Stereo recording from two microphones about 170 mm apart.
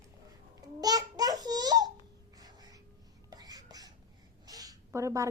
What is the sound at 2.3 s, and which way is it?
Music, 20° right (ahead or behind).